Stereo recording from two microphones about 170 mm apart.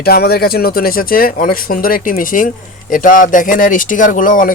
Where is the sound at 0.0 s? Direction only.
65° left (ahead or behind).